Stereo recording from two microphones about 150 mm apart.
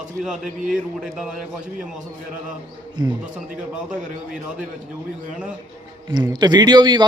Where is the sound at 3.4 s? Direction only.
5° right (ahead or behind).